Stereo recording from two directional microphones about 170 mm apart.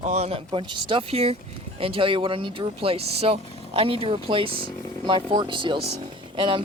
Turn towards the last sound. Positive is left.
turn(degrees=-30)  # may be behind; listen again after turning